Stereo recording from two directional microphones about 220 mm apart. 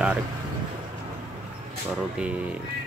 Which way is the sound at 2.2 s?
5° right (ahead or behind).